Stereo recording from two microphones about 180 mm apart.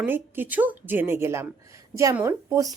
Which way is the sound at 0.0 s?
10° right (ahead or behind).